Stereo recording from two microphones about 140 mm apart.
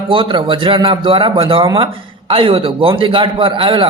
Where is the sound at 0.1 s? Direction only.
35° right (ahead or behind).